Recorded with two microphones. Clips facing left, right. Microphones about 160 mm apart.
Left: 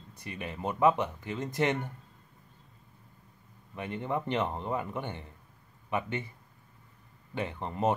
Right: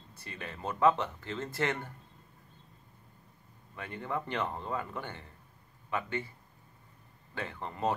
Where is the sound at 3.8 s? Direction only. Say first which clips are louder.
Left 4 dB; 20° left (ahead or behind).